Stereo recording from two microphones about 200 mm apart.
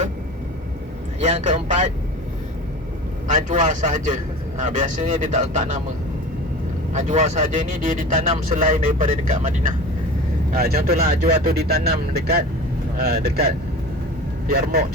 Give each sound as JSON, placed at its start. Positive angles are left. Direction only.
{"t": 1.2, "sound": "speech", "side_deg": -35}
{"t": 3.5, "sound": "speech", "side_deg": -40}
{"t": 6.9, "sound": "speech", "side_deg": -35}